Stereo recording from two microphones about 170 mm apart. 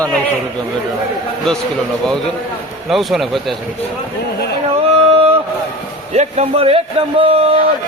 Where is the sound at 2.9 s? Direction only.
Centre (ahead or behind).